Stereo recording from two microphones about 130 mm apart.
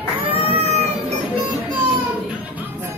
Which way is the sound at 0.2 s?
50° right (ahead or behind).